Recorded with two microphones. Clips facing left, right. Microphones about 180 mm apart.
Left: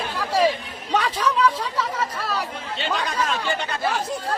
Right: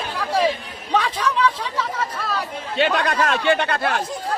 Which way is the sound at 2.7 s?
70° right (ahead or behind).